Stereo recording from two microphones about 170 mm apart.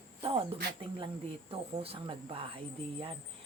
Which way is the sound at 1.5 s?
35° right (ahead or behind).